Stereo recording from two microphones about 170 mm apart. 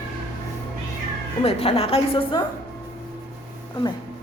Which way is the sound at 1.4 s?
35° left (ahead or behind).